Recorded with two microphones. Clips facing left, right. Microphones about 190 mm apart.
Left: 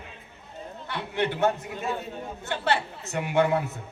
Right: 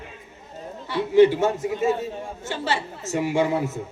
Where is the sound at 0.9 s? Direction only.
60° left (ahead or behind).